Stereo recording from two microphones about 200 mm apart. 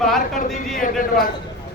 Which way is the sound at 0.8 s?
45° left (ahead or behind).